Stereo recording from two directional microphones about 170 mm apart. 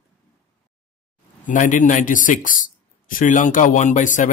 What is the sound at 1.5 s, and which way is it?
Speech, 50° left (ahead or behind).